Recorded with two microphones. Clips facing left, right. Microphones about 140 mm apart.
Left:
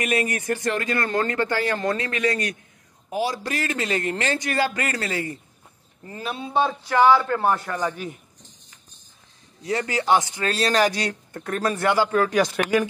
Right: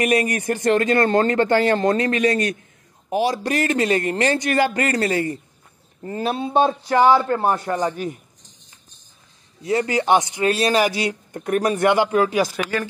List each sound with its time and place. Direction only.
0.0 s a man's voice: 40° right (ahead or behind)
0.7 s speech: 50° right (ahead or behind)
0.9 s a man's voice: 30° right (ahead or behind)
3.4 s a man's voice: 45° right (ahead or behind)
6.3 s speech: 55° right (ahead or behind)
6.7 s a man's voice: 35° right (ahead or behind)
7.3 s a man's voice: 25° right (ahead or behind)
9.7 s speech: 20° right (ahead or behind)